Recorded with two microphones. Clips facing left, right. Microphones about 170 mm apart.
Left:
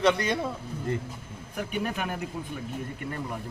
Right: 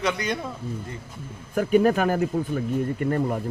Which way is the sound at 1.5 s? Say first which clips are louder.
Right 12 dB; 45° right (ahead or behind).